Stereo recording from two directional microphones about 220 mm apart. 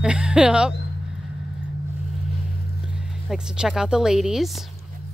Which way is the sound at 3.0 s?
Centre (ahead or behind).